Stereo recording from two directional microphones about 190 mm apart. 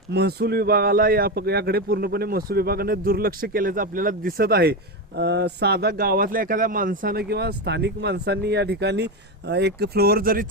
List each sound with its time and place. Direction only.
0.1 s speech: 60° right (ahead or behind)